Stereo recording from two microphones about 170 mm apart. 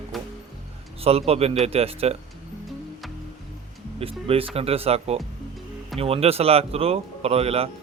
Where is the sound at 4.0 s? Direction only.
35° right (ahead or behind).